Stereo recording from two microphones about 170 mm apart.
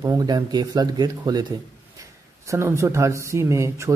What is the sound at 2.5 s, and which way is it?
Speech, 15° right (ahead or behind).